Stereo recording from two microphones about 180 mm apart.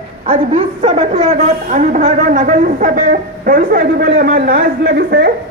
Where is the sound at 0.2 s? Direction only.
35° right (ahead or behind).